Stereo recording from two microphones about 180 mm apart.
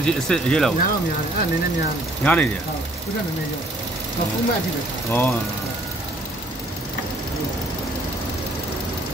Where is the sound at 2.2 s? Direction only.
10° left (ahead or behind).